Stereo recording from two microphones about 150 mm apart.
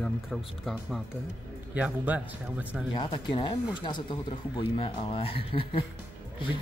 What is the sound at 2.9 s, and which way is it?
Speech, 35° left (ahead or behind).